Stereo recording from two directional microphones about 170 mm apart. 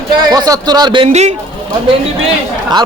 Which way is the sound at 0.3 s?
20° right (ahead or behind).